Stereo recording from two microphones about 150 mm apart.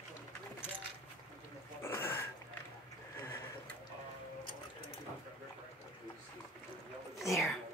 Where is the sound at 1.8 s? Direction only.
15° left (ahead or behind).